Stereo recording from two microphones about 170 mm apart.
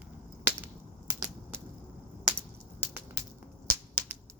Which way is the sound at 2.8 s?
10° right (ahead or behind).